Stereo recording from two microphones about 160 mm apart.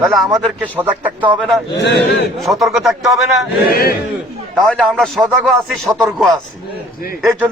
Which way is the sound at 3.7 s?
70° left (ahead or behind).